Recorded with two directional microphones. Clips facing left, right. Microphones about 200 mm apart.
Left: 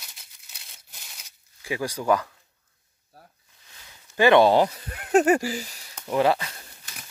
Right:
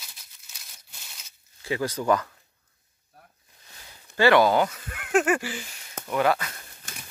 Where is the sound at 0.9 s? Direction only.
15° left (ahead or behind).